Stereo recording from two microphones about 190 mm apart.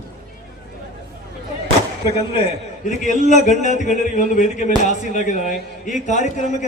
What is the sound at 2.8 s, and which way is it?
A man's voice, 40° left (ahead or behind).